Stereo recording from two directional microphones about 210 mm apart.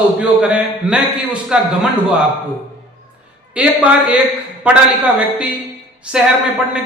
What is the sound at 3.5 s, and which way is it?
Speech, 5° right (ahead or behind).